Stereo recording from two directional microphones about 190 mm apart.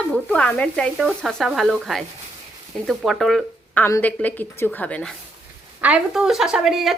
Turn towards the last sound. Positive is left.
turn(degrees=0)  # may be behind; listen again after turning